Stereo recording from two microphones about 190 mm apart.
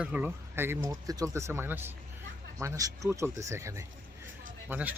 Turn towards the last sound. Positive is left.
turn(degrees=-10)  # may be behind; listen again after turning